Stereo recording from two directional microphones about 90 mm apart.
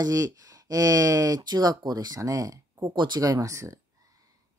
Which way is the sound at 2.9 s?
55° right (ahead or behind).